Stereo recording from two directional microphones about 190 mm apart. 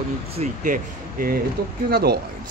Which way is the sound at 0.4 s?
45° right (ahead or behind).